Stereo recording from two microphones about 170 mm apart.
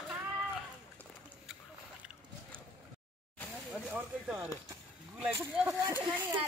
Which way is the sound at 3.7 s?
5° right (ahead or behind).